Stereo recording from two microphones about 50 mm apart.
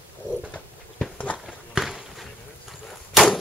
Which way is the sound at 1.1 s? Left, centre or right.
Left.